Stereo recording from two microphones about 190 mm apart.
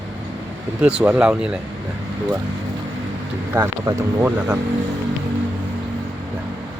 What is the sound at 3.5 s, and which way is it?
Speech, 15° right (ahead or behind).